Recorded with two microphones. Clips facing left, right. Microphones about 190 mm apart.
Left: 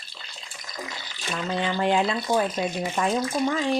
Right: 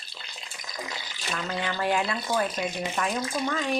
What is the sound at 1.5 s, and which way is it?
Speech, 20° left (ahead or behind).